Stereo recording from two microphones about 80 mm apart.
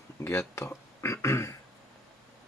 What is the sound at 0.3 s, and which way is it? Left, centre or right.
Speech, left.